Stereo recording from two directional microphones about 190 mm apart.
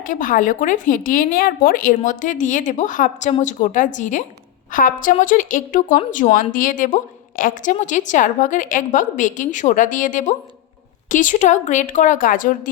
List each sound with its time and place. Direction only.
0.0 s a woman's voice: 45° left (ahead or behind)